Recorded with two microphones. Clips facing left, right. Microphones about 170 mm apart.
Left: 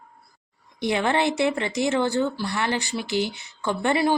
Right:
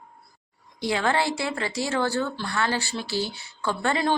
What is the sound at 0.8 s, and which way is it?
Speech, 20° left (ahead or behind).